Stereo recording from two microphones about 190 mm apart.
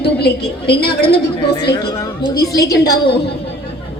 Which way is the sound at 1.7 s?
20° left (ahead or behind).